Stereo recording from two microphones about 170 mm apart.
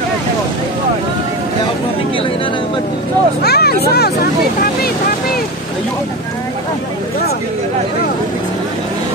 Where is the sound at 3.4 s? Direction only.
70° left (ahead or behind).